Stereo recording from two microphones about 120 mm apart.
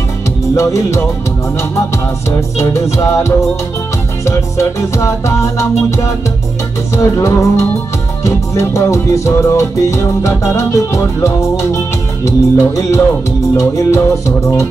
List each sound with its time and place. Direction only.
0.6 s music: 25° left (ahead or behind)
2.6 s music: 25° left (ahead or behind)